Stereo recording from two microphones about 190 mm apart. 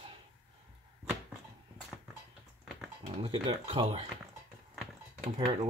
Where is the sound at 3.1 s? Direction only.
30° right (ahead or behind).